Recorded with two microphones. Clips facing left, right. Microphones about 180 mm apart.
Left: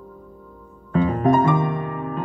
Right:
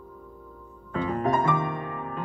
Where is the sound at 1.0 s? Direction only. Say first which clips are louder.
Left 7 dB; 25° left (ahead or behind).